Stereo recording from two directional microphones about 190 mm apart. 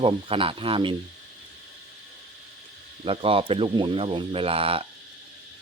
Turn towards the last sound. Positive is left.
turn(degrees=-30)  # may be behind; listen again after turning